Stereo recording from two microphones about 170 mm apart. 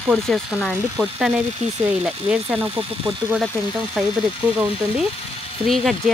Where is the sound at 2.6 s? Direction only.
35° right (ahead or behind).